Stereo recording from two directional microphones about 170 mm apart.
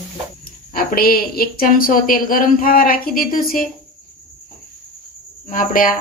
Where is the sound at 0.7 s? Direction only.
60° left (ahead or behind).